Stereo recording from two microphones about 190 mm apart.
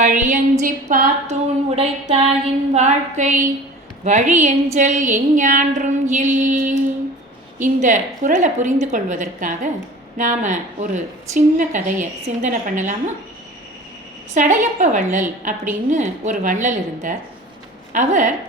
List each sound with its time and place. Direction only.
0.0 s a woman's voice: 40° right (ahead or behind)
14.3 s a woman's voice: 40° right (ahead or behind)